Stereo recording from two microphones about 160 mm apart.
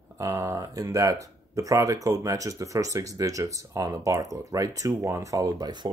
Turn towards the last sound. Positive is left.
turn(degrees=-25)  # may be behind; listen again after turning